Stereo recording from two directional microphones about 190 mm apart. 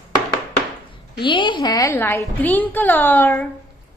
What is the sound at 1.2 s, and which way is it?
A woman's voice, 25° left (ahead or behind).